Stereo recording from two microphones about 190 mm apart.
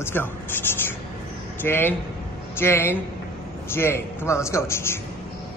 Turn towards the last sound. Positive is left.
turn(degrees=15)  # may be behind; listen again after turning